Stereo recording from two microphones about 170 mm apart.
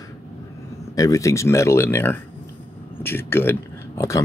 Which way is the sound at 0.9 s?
20° left (ahead or behind).